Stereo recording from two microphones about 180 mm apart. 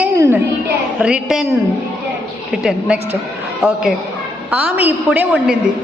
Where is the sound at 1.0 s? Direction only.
5° right (ahead or behind).